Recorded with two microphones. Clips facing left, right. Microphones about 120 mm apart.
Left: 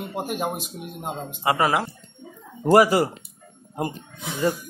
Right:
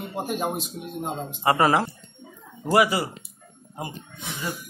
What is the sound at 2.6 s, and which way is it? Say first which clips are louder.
Speech: left 5 dB; 40° left (ahead or behind).